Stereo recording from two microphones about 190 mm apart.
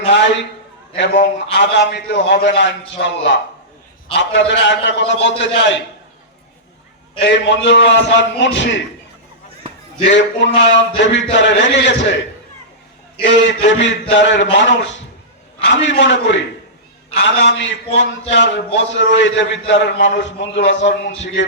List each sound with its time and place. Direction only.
0.1 s a sound: 70° left (ahead or behind)
0.9 s a man's voice: 70° left (ahead or behind)
7.2 s a man's voice: 65° left (ahead or behind)
10.1 s a man's voice: 70° left (ahead or behind)
13.2 s a man's voice: 70° left (ahead or behind)